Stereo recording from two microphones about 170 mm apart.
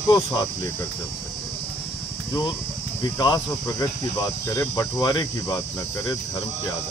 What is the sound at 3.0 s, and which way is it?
Speech, 25° left (ahead or behind).